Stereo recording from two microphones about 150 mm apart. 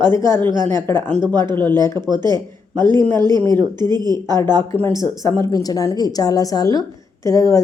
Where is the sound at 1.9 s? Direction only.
30° right (ahead or behind).